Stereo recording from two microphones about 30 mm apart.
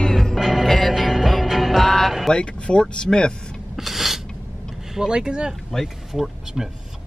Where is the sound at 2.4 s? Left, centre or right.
Left.